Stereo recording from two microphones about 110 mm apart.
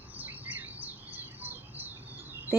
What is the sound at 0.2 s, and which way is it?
Bird, 15° right (ahead or behind).